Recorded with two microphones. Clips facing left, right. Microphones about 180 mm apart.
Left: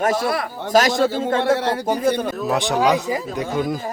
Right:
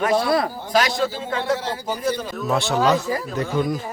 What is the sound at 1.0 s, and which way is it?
Speech, 60° left (ahead or behind).